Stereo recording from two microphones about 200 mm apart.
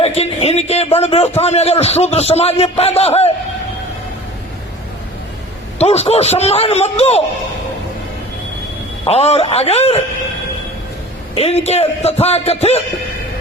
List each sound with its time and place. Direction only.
0.0 s a man's voice: 30° left (ahead or behind)
5.8 s a man's voice: 30° left (ahead or behind)
9.0 s a man's voice: 30° left (ahead or behind)
11.3 s a man's voice: 30° left (ahead or behind)